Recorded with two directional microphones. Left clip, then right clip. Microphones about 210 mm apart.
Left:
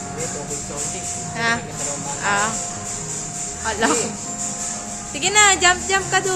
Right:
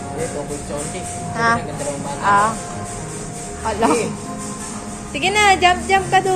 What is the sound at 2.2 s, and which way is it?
Music, 25° left (ahead or behind).